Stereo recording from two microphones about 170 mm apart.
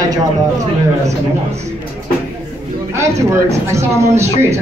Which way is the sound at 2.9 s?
15° right (ahead or behind).